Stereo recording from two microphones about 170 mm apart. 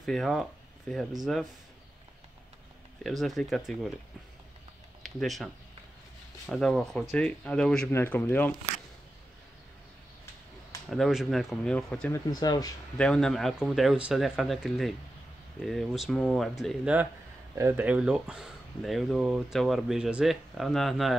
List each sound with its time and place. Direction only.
0.0 s speech: centre (ahead or behind)
3.0 s speech: centre (ahead or behind)
5.0 s speech: centre (ahead or behind)
10.9 s speech: centre (ahead or behind)
12.3 s speech: 20° left (ahead or behind)
12.9 s speech: 5° left (ahead or behind)